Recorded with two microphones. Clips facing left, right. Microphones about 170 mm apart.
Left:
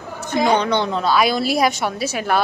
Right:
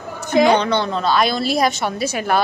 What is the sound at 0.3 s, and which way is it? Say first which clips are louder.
Speech: right 4 dB; 75° right (ahead or behind).